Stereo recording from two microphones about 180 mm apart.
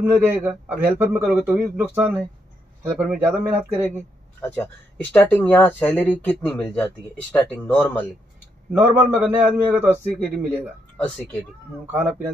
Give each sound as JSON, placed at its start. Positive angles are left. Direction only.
{"t": 0.0, "sound": "a man's voice", "side_deg": -10}
{"t": 5.1, "sound": "speech", "side_deg": 10}
{"t": 8.7, "sound": "a man's voice", "side_deg": -10}
{"t": 10.2, "sound": "speech", "side_deg": 5}
{"t": 11.8, "sound": "a man's voice", "side_deg": -10}